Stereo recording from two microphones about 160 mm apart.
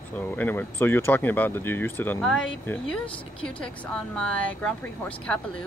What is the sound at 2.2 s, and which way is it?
Speech, centre (ahead or behind).